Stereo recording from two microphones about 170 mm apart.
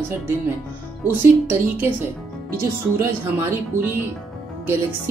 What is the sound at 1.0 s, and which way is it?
Speech, 10° right (ahead or behind).